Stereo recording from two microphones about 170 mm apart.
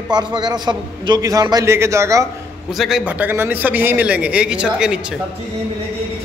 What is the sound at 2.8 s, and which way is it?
Speech, 5° right (ahead or behind).